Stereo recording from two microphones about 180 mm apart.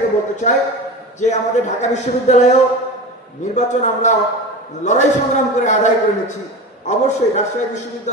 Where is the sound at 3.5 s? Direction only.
40° left (ahead or behind).